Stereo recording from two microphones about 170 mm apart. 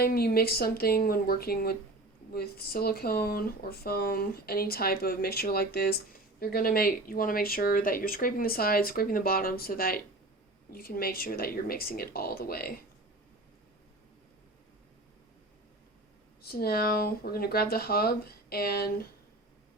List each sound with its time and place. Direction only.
0.0 s speech: 60° left (ahead or behind)
16.4 s speech: 65° left (ahead or behind)